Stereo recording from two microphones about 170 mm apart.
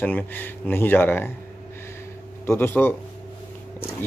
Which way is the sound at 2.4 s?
15° left (ahead or behind).